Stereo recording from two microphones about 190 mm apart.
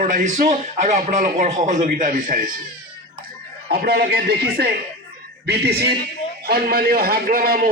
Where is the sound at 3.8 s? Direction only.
55° right (ahead or behind).